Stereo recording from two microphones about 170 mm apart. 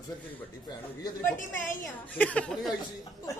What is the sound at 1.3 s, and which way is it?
Speech, 50° left (ahead or behind).